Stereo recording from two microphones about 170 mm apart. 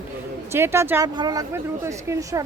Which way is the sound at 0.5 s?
15° right (ahead or behind).